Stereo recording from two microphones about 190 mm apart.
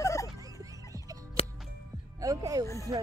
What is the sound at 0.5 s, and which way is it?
Music, 15° right (ahead or behind).